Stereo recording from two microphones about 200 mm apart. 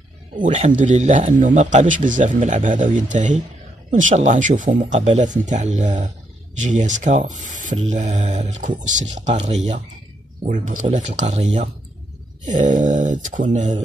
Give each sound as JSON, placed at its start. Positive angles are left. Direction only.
{"t": 0.4, "sound": "a man's voice", "side_deg": -40}